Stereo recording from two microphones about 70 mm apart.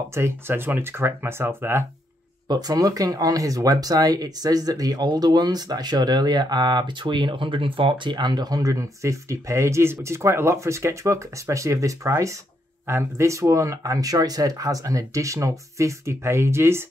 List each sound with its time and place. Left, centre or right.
0.1 s speech: right
2.4 s speech: right